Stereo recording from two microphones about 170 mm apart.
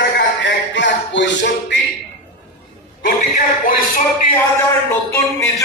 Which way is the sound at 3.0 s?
55° left (ahead or behind).